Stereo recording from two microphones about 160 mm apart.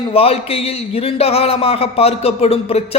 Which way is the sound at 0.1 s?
40° left (ahead or behind).